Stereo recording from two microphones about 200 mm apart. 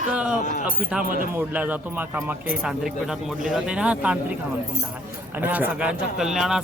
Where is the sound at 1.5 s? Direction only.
5° right (ahead or behind).